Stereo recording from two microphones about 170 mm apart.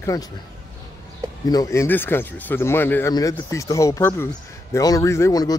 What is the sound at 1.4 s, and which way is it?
A man's voice, 20° left (ahead or behind).